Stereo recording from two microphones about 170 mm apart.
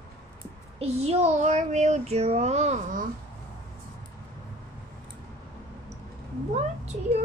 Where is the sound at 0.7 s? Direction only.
40° right (ahead or behind).